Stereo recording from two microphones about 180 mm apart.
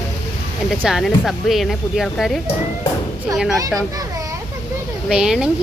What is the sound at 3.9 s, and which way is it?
Children playing, 20° right (ahead or behind).